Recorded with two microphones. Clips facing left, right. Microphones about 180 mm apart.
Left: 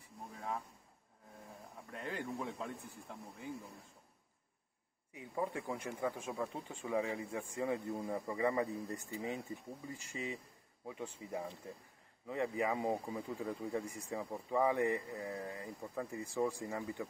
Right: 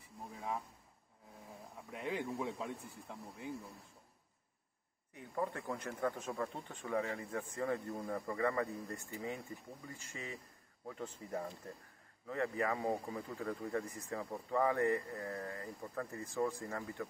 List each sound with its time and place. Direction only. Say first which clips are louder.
1.9 s speech: right 2 dB; 5° right (ahead or behind)
5.1 s speech: even; 10° left (ahead or behind)